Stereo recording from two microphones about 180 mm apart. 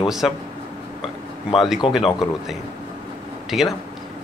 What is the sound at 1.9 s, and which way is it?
Speech, centre (ahead or behind).